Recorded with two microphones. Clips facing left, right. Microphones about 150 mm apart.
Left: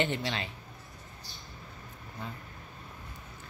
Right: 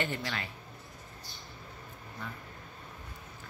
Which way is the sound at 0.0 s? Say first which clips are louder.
Left 4 dB; 20° left (ahead or behind).